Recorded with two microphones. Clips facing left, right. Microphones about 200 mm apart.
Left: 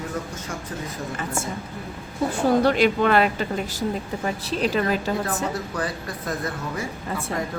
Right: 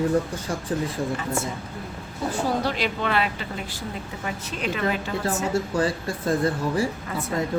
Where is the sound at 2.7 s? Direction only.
50° left (ahead or behind).